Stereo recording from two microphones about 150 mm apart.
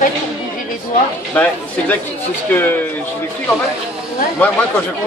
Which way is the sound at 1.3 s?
10° left (ahead or behind).